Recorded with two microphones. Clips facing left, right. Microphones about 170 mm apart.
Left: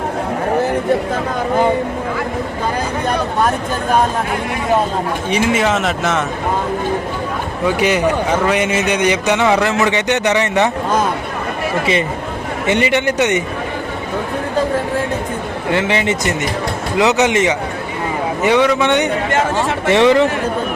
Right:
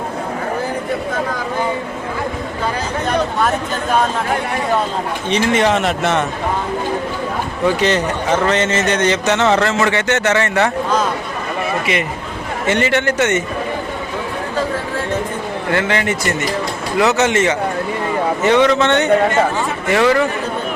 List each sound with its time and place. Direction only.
5.3 s speech: 5° left (ahead or behind)
7.8 s a man's voice: 10° left (ahead or behind)
12.6 s a man's voice: 15° left (ahead or behind)
15.7 s a man's voice: 20° left (ahead or behind)